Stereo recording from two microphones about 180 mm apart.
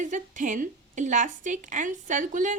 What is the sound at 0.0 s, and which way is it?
A woman's voice, 45° right (ahead or behind).